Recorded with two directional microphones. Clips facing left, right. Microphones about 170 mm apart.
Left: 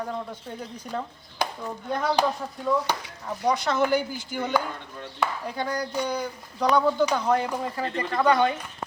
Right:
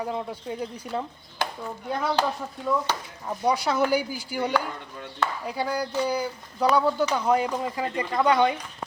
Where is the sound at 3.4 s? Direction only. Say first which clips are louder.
Even; 10° right (ahead or behind).